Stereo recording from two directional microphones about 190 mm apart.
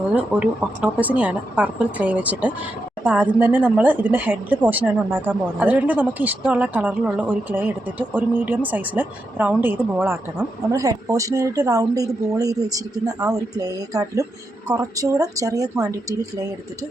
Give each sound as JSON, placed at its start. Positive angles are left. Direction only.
{"t": 0.1, "sound": "a woman's voice", "side_deg": -5}